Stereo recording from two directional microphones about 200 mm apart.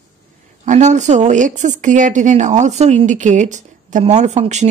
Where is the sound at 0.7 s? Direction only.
35° right (ahead or behind).